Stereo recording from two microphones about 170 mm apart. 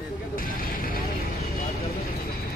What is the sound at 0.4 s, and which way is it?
Vehicle, 55° left (ahead or behind).